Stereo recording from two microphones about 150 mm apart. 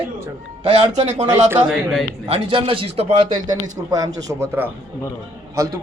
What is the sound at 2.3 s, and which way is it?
A man's voice, 35° right (ahead or behind).